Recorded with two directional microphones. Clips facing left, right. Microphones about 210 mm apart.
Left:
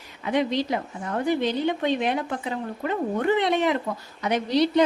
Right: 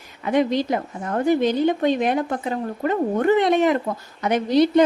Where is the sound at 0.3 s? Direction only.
50° right (ahead or behind).